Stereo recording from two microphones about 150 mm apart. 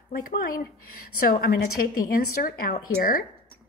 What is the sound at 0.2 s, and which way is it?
A woman's voice, 80° left.